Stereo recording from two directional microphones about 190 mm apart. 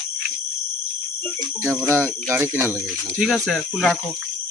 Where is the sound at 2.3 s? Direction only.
15° right (ahead or behind).